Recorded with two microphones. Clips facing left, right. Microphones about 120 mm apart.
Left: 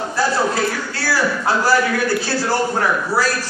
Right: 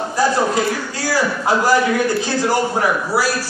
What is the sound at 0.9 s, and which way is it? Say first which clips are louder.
A man's voice: right 1 dB; 15° right (ahead or behind).